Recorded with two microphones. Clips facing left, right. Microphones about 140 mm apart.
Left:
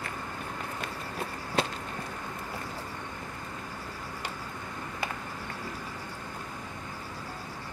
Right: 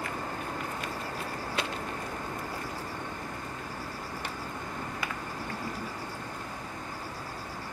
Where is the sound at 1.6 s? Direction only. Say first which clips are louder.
Left 6 dB; 35° left (ahead or behind).